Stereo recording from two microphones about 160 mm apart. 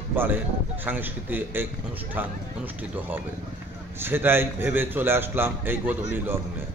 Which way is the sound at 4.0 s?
15° right (ahead or behind).